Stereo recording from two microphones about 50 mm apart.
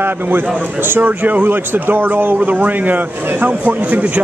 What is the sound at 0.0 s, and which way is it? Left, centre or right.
Speech, right.